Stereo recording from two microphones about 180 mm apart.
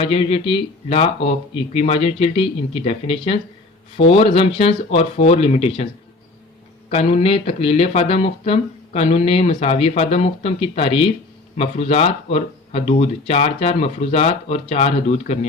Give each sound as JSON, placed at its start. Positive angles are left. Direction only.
{"t": 0.0, "sound": "speech", "side_deg": 30}
{"t": 6.9, "sound": "speech", "side_deg": 35}